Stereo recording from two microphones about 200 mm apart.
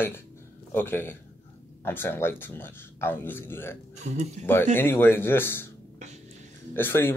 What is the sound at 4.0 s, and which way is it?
Speech, 35° right (ahead or behind).